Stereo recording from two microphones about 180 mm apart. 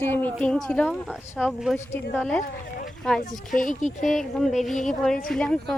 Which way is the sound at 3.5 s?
45° left (ahead or behind).